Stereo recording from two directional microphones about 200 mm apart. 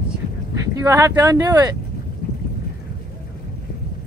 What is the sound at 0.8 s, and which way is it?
Speech, 15° right (ahead or behind).